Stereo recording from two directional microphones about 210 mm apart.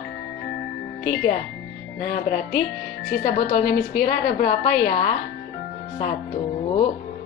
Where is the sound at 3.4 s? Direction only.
35° left (ahead or behind).